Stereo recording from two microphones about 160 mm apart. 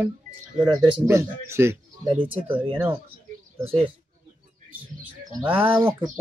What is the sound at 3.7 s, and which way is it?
Speech, 35° right (ahead or behind).